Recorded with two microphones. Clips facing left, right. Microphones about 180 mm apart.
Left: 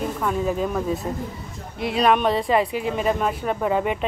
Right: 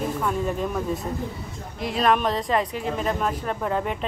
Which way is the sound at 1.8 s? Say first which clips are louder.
Left 3 dB; centre (ahead or behind).